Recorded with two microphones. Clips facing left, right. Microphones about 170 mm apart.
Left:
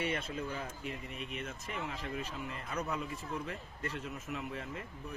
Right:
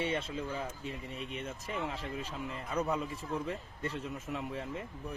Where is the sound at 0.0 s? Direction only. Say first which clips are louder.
Right 2 dB; 25° right (ahead or behind).